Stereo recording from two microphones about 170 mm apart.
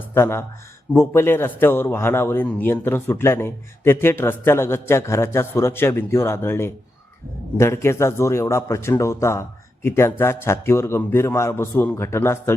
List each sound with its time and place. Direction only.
0.1 s a man's voice: 15° left (ahead or behind)